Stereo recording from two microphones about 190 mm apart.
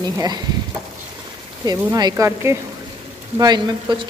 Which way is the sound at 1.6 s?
20° right (ahead or behind).